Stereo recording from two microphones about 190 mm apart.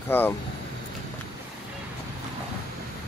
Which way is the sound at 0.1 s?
10° left (ahead or behind).